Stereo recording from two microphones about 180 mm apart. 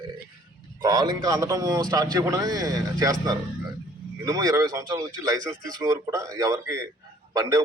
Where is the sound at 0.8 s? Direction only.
20° right (ahead or behind).